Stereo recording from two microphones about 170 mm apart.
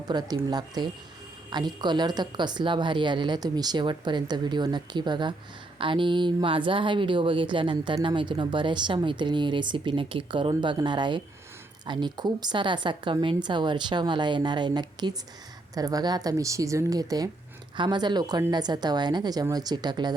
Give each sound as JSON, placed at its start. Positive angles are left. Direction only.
{"t": 0.1, "sound": "speech", "side_deg": -25}